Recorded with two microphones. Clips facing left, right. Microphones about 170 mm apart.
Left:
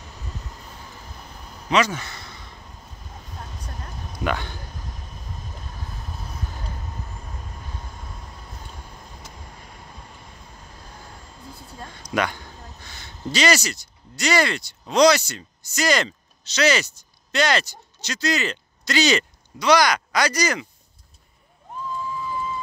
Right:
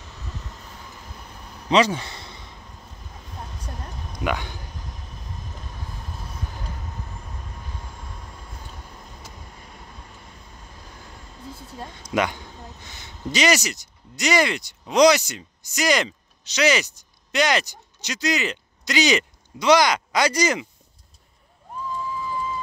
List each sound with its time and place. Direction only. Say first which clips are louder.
1.7 s a sound: right 2 dB; 30° right (ahead or behind)
4.2 s speech: even; 15° right (ahead or behind)
11.8 s speech: right 1 dB; 20° right (ahead or behind)